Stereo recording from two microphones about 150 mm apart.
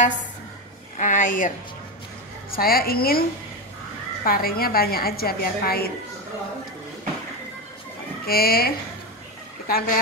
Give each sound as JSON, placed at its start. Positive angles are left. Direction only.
{"t": 0.9, "sound": "speech", "side_deg": 55}
{"t": 2.5, "sound": "a woman's voice", "side_deg": 85}
{"t": 8.3, "sound": "speech", "side_deg": 90}
{"t": 9.7, "sound": "a woman's voice", "side_deg": 80}